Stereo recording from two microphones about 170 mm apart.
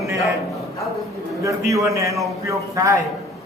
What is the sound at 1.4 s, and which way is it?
A man's voice, 20° right (ahead or behind).